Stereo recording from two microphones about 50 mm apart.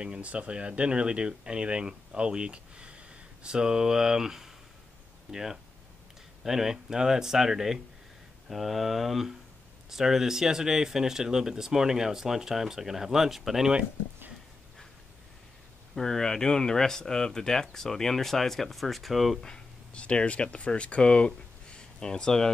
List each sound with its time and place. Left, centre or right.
0.0 s speech: right
15.9 s speech: centre
19.4 s speech: centre